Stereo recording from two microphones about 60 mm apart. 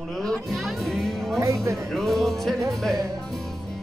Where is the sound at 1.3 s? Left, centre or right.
Right.